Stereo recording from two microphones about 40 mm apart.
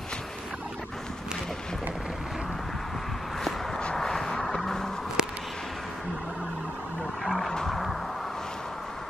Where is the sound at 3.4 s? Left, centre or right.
Centre.